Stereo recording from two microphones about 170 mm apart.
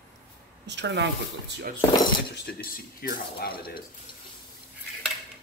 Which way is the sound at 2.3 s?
70° left (ahead or behind).